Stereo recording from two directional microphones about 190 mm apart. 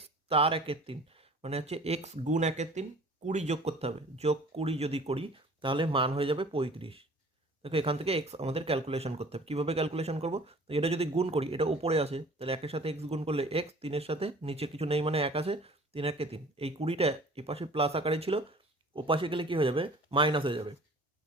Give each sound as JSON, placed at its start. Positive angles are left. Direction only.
{"t": 0.0, "sound": "speech", "side_deg": -30}